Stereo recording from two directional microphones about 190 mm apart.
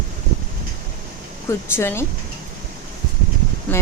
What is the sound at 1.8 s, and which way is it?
Speech, 15° left (ahead or behind).